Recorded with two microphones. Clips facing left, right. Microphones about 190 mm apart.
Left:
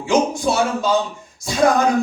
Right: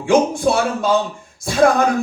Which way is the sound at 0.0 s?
55° right (ahead or behind).